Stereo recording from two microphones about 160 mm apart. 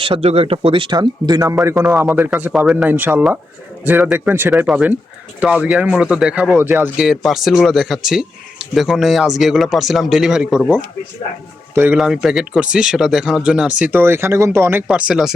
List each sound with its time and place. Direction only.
0.0 s speech: 35° right (ahead or behind)
1.6 s speech: 5° right (ahead or behind)
11.7 s speech: 10° right (ahead or behind)